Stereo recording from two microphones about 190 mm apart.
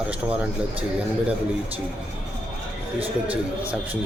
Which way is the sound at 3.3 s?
10° right (ahead or behind).